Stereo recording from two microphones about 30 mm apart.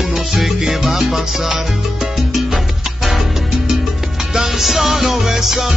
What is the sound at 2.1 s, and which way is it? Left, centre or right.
Salsa music, centre.